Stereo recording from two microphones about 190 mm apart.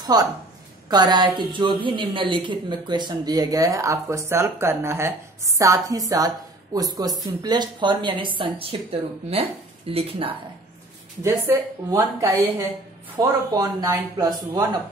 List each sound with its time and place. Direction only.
0.0 s a woman's voice: 20° right (ahead or behind)
11.2 s a woman's voice: 15° right (ahead or behind)